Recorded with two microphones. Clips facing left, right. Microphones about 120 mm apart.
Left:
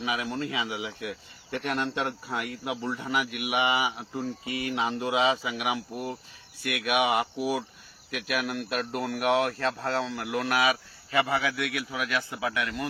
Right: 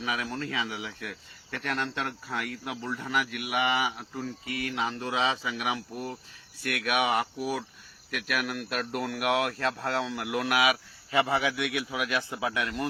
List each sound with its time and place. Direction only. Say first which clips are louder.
0.0 s speech: left 2 dB; 5° left (ahead or behind)
2.9 s speech: left 1 dB; 5° left (ahead or behind)
11.1 s a man's voice: even; 20° right (ahead or behind)